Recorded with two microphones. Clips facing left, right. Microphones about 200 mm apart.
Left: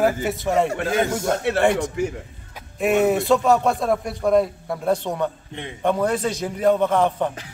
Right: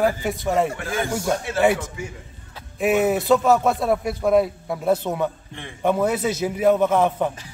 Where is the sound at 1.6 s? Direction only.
5° right (ahead or behind).